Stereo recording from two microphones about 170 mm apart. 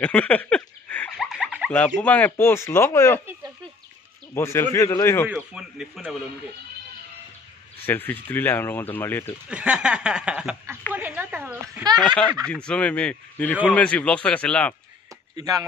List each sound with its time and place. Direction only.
0.0 s a sound: 10° left (ahead or behind)
1.2 s a sound: 5° right (ahead or behind)
1.7 s speech: 5° left (ahead or behind)
4.3 s speech: 15° left (ahead or behind)
5.3 s speech: 5° right (ahead or behind)
7.8 s speech: 10° left (ahead or behind)
9.5 s speech: 5° right (ahead or behind)
10.9 s a sound: 10° right (ahead or behind)
12.6 s speech: 5° left (ahead or behind)
15.3 s speech: 20° right (ahead or behind)